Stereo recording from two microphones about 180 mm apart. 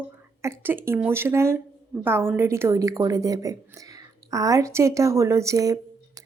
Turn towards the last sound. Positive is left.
turn(degrees=-20)  # may be behind; listen again after turning